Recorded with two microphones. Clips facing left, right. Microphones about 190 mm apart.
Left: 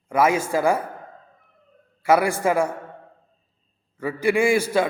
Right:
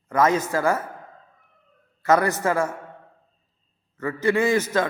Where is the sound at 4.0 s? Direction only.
10° left (ahead or behind).